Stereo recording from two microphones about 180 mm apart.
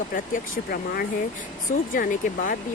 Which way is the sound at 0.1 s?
55° left (ahead or behind).